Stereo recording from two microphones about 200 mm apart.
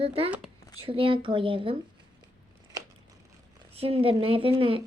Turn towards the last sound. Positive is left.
turn(degrees=-25)  # may be behind; listen again after turning